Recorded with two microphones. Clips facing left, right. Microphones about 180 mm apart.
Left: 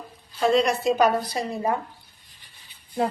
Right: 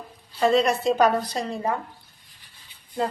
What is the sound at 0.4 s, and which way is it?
A woman's voice, centre (ahead or behind).